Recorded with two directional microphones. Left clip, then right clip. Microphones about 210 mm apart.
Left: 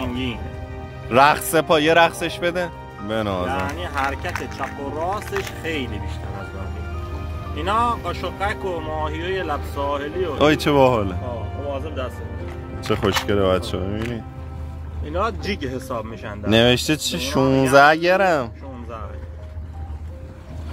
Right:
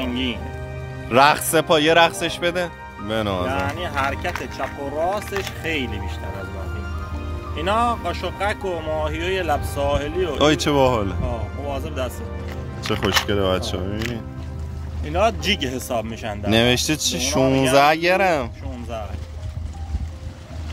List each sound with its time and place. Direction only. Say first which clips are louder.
1.0 s speech: even; centre (ahead or behind)
3.4 s speech: right 1 dB; 50° right (ahead or behind)
7.5 s speech: even; 50° right (ahead or behind)
10.4 s speech: left 2 dB; 5° left (ahead or behind)
11.7 s music: right 2 dB; 50° right (ahead or behind)
12.8 s speech: even; 5° left (ahead or behind)
15.0 s speech: right 4 dB; 50° right (ahead or behind)
16.4 s speech: left 2 dB; 5° left (ahead or behind)